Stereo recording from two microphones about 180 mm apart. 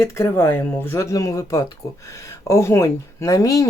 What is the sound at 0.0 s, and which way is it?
Speech, 15° left (ahead or behind).